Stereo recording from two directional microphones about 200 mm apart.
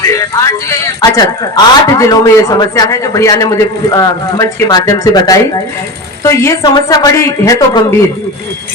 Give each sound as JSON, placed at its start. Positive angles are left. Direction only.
{"t": 0.1, "sound": "a man's voice", "side_deg": 15}